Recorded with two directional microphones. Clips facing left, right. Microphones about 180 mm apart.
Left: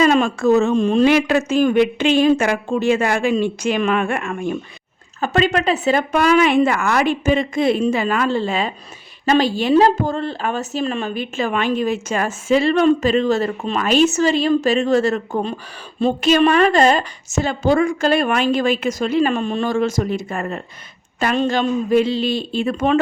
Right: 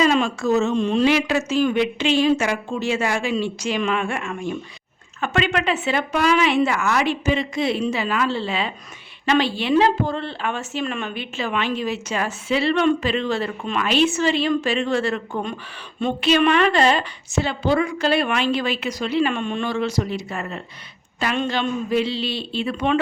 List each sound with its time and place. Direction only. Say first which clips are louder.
0.0 s a woman's voice: left 4 dB; 50° left (ahead or behind)
5.2 s a woman's voice: left 4 dB; 40° left (ahead or behind)